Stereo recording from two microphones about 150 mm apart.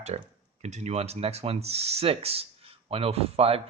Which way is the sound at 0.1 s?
40° right (ahead or behind).